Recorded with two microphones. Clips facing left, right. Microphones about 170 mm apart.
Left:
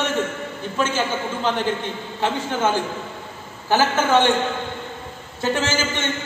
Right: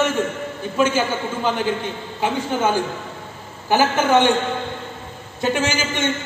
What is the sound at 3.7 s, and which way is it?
Speech, 15° right (ahead or behind).